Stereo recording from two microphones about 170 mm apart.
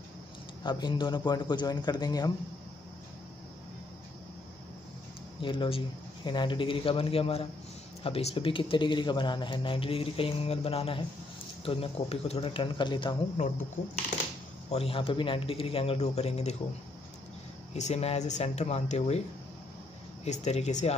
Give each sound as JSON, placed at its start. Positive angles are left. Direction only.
{"t": 0.7, "sound": "speech", "side_deg": 25}
{"t": 5.4, "sound": "a man's voice", "side_deg": 30}
{"t": 14.7, "sound": "a man's voice", "side_deg": 35}
{"t": 17.7, "sound": "a man's voice", "side_deg": 40}
{"t": 20.2, "sound": "a man's voice", "side_deg": 40}